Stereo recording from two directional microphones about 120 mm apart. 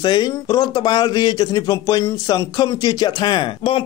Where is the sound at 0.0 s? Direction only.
35° left (ahead or behind).